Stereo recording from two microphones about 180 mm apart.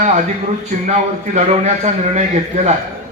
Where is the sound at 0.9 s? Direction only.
40° right (ahead or behind).